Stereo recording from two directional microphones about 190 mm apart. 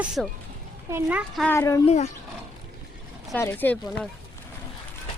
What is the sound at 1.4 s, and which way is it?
Speech, 15° left (ahead or behind).